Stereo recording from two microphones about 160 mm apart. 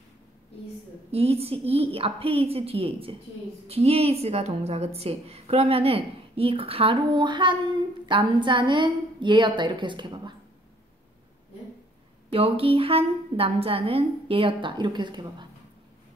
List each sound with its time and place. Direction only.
1.1 s a woman's voice: 40° right (ahead or behind)
12.3 s a woman's voice: 35° right (ahead or behind)